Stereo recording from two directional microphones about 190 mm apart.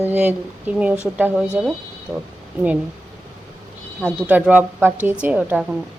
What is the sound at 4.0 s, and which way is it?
A woman's voice, 5° right (ahead or behind).